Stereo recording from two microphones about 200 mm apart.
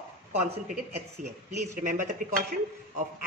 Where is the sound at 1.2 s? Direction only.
40° right (ahead or behind).